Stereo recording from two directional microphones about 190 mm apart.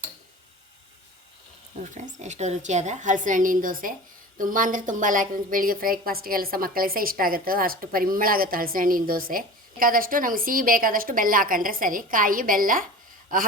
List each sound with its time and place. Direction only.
1.8 s a woman's voice: 40° right (ahead or behind)